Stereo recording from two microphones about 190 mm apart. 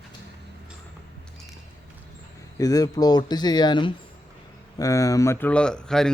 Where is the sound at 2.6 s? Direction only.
20° left (ahead or behind).